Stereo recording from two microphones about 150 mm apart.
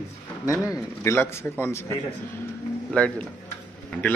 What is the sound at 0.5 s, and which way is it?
A man's voice, 20° left (ahead or behind).